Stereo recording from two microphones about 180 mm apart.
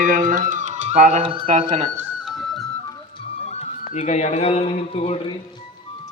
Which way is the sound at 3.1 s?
35° left (ahead or behind).